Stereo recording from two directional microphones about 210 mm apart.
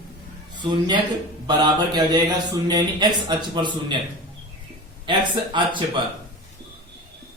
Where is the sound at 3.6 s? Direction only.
20° right (ahead or behind).